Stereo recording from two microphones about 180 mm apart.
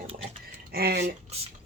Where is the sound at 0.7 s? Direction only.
60° right (ahead or behind).